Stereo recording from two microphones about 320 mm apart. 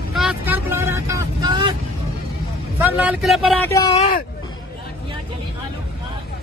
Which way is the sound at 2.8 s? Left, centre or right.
Centre.